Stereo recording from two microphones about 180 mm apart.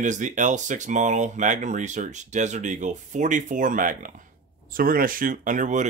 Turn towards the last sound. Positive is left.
turn(degrees=-45)  # may be behind; listen again after turning